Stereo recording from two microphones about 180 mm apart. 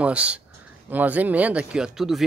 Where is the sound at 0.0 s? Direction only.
5° right (ahead or behind).